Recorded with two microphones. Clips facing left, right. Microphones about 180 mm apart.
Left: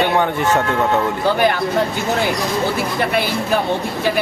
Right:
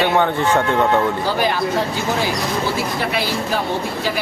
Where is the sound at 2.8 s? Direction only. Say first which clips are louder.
Left 2 dB; 55° left (ahead or behind).